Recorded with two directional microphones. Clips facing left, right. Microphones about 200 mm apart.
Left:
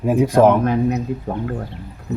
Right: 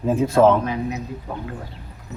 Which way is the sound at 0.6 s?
55° left (ahead or behind).